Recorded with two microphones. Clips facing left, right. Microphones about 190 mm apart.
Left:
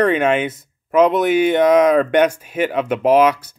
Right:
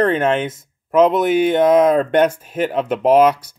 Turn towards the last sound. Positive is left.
turn(degrees=5)  # may be behind; listen again after turning